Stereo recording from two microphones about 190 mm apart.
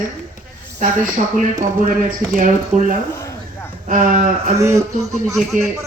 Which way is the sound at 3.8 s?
45° right (ahead or behind).